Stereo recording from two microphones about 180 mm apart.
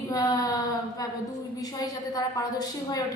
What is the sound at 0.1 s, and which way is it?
Child singing, 20° left (ahead or behind).